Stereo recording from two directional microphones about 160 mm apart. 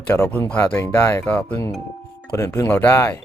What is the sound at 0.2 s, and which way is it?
Speech, 10° left (ahead or behind).